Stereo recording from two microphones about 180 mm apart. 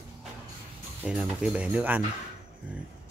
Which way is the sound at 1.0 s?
5° right (ahead or behind).